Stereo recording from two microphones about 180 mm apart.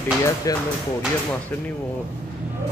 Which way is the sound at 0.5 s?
20° left (ahead or behind).